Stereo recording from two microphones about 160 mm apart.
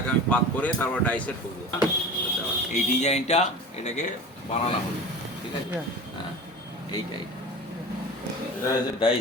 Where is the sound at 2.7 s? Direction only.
45° left (ahead or behind).